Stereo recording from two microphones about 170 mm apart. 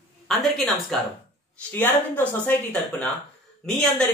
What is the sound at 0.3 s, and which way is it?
Speech, centre (ahead or behind).